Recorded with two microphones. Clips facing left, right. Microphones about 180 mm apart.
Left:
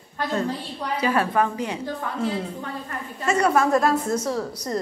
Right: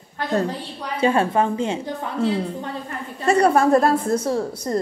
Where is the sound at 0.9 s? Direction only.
25° right (ahead or behind).